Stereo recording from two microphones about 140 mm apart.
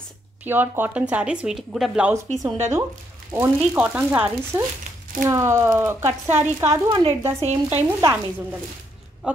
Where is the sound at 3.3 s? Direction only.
15° right (ahead or behind).